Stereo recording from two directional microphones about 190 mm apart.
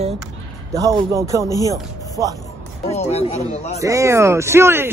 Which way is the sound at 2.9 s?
35° left (ahead or behind).